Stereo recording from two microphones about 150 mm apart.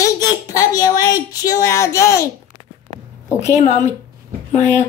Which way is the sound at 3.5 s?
50° left (ahead or behind).